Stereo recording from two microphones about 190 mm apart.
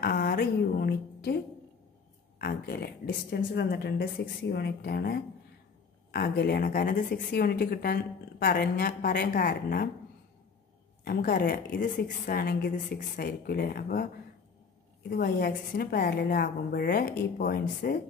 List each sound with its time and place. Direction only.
0.0 s a woman's voice: 50° left (ahead or behind)
11.1 s a woman's voice: 50° left (ahead or behind)